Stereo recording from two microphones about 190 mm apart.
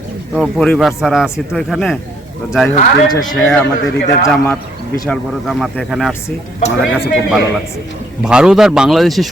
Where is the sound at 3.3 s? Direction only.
5° left (ahead or behind).